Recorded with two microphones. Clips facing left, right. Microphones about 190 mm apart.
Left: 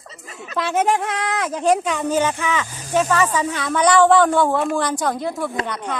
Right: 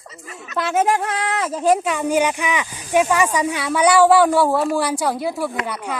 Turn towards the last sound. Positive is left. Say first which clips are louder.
# even
turn(degrees=-5)  # may be behind; listen again after turning